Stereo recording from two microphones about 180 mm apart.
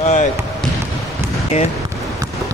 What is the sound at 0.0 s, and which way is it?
Basketball bounce, 40° left (ahead or behind).